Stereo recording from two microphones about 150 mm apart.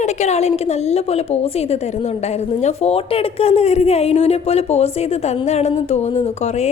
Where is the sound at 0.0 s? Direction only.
50° left (ahead or behind).